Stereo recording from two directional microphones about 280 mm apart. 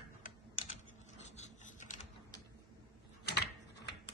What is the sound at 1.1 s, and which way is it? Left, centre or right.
Rub, left.